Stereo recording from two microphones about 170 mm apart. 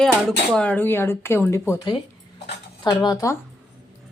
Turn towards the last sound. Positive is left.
turn(degrees=20)  # may be behind; listen again after turning